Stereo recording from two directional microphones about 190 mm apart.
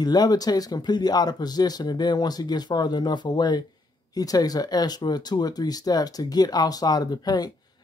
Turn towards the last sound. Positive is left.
turn(degrees=20)  # may be behind; listen again after turning